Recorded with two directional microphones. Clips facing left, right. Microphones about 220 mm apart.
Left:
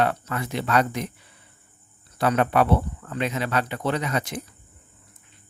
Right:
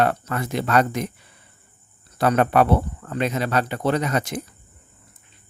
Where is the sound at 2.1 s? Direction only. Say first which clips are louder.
Right 3 dB; 45° right (ahead or behind).